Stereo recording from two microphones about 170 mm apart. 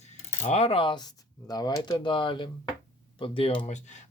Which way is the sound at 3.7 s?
45° left (ahead or behind).